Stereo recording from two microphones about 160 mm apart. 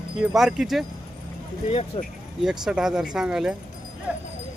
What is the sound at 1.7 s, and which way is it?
Speech, 40° left (ahead or behind).